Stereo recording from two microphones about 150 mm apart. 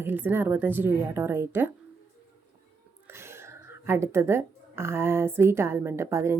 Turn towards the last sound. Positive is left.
turn(degrees=-15)  # may be behind; listen again after turning